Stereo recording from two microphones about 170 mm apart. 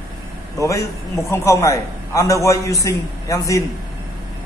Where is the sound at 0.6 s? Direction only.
15° left (ahead or behind).